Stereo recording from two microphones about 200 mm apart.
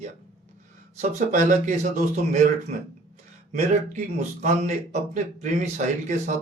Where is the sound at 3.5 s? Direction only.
40° right (ahead or behind).